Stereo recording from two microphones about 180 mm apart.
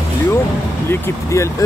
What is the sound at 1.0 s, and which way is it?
Speech, 15° left (ahead or behind).